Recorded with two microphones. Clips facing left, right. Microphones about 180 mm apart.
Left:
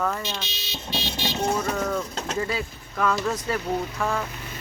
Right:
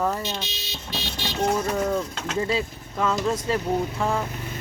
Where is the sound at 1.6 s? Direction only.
30° right (ahead or behind).